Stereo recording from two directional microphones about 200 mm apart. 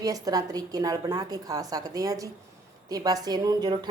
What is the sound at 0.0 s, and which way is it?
A woman's voice, 20° right (ahead or behind).